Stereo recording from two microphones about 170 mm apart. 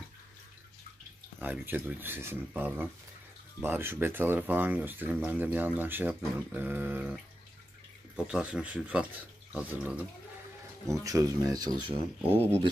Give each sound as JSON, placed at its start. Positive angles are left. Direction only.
{"t": 1.4, "sound": "speech", "side_deg": -10}
{"t": 8.2, "sound": "speech", "side_deg": -5}
{"t": 12.3, "sound": "speech", "side_deg": 10}